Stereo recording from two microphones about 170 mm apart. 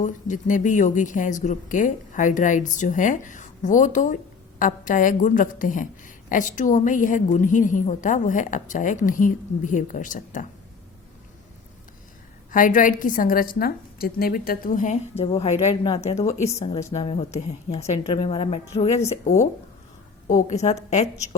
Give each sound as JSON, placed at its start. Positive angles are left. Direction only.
{"t": 0.0, "sound": "a woman's voice", "side_deg": 50}
{"t": 12.5, "sound": "a woman's voice", "side_deg": 50}
{"t": 15.7, "sound": "a woman's voice", "side_deg": 25}
{"t": 16.0, "sound": "a woman's voice", "side_deg": 40}